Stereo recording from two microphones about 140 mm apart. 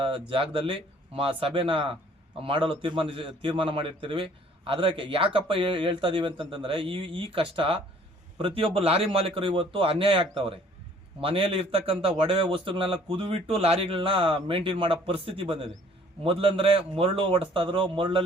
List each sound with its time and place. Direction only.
0.0 s a man's voice: 35° right (ahead or behind)